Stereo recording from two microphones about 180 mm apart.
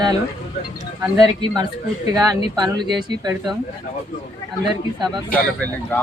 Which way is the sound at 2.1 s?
20° right (ahead or behind).